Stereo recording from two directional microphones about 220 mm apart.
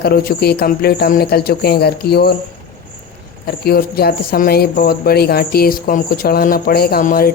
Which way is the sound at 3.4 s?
45° left (ahead or behind).